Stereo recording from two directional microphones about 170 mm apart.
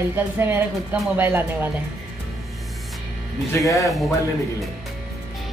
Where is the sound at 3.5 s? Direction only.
20° left (ahead or behind).